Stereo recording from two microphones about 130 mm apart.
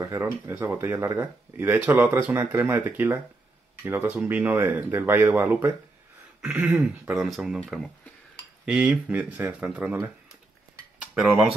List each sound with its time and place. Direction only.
0.0 s speech: 20° right (ahead or behind)
11.0 s cutlery: 5° right (ahead or behind)